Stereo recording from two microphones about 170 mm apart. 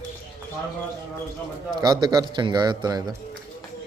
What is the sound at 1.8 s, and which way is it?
Speech, 25° right (ahead or behind).